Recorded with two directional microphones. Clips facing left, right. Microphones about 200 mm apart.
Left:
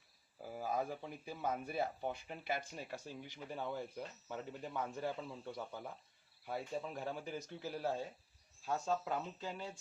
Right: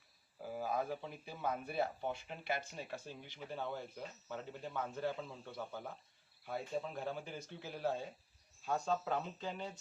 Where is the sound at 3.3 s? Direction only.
10° left (ahead or behind).